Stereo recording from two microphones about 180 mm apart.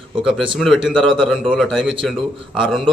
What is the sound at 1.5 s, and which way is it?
Speech, centre (ahead or behind).